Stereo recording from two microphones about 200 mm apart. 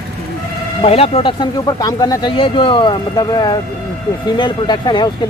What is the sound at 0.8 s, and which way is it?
Speech, 30° left (ahead or behind).